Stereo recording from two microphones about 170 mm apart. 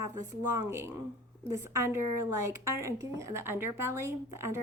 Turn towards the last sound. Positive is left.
turn(degrees=-15)  # may be behind; listen again after turning